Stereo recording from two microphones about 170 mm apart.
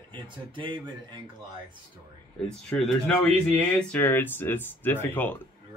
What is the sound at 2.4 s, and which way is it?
A man's voice, 5° left (ahead or behind).